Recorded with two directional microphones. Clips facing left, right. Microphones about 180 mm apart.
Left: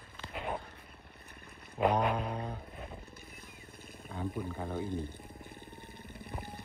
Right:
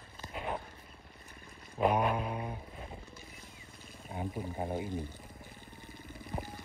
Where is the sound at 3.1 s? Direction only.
55° left (ahead or behind).